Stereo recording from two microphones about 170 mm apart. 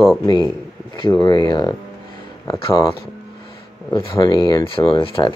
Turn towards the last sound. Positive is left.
turn(degrees=30)  # may be behind; listen again after turning